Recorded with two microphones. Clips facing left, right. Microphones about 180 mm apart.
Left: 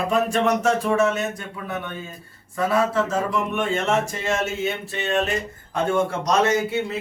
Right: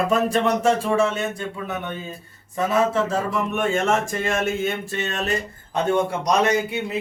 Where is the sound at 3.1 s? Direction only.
45° right (ahead or behind).